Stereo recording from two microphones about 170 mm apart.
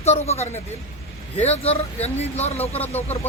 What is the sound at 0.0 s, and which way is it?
Speech, 40° left (ahead or behind).